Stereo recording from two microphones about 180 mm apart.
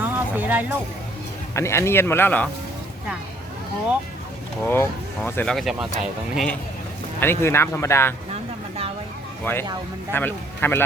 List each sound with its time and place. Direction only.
0.0 s music: 10° right (ahead or behind)
1.5 s speech: 15° left (ahead or behind)
4.7 s speech: 10° left (ahead or behind)
7.2 s speech: 15° left (ahead or behind)
8.3 s a sound: 35° right (ahead or behind)
9.4 s a man's voice: 10° left (ahead or behind)